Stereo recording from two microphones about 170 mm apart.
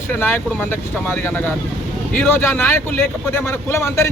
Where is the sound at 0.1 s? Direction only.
10° left (ahead or behind).